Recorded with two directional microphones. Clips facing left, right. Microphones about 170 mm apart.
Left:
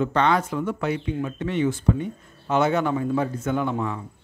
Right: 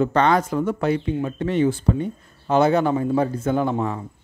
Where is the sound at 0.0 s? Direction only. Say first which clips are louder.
Right 3 dB; 40° right (ahead or behind).